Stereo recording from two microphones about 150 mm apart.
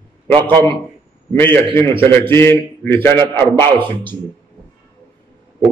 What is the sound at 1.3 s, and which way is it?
A man's voice, 15° left (ahead or behind).